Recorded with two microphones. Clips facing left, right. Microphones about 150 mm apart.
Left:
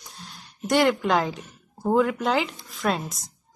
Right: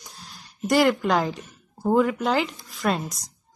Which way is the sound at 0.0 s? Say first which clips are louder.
Left 1 dB; centre (ahead or behind).